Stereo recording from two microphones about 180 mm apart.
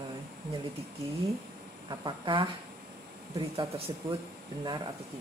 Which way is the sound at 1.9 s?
25° right (ahead or behind).